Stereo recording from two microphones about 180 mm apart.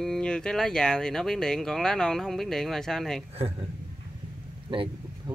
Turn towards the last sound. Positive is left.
turn(degrees=-25)  # may be behind; listen again after turning